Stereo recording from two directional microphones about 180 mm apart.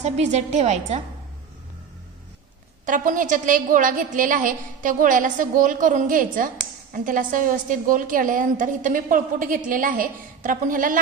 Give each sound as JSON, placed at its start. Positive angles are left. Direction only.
{"t": 0.0, "sound": "a woman's voice", "side_deg": -40}
{"t": 2.8, "sound": "a woman's voice", "side_deg": -45}